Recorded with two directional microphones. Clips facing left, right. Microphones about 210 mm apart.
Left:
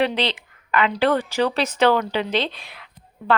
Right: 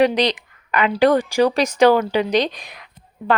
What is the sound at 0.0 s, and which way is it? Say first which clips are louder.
Speech: right 5 dB; 15° right (ahead or behind).